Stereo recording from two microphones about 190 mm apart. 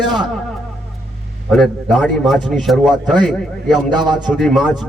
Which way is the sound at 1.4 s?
Centre (ahead or behind).